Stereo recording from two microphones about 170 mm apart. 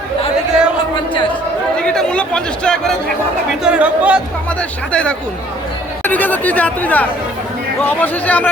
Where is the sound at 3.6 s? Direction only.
5° right (ahead or behind).